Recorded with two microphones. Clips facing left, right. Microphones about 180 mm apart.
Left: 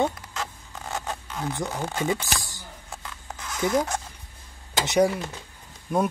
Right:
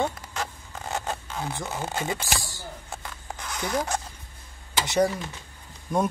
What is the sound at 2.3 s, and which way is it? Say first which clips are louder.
Speech: right 1 dB; 20° left (ahead or behind).